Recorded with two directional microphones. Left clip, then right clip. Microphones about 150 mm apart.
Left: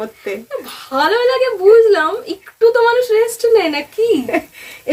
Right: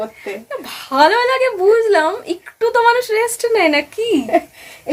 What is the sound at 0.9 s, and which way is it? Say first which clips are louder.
Speech: right 1 dB; 30° right (ahead or behind).